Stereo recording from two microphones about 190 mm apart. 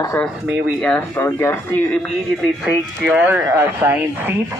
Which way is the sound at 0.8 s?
5° left (ahead or behind).